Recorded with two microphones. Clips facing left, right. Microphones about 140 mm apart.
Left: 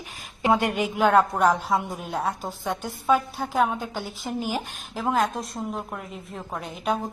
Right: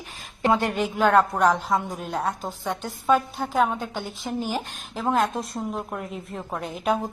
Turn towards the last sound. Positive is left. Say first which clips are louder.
# right 2 dB
turn(degrees=0)  # may be behind; listen again after turning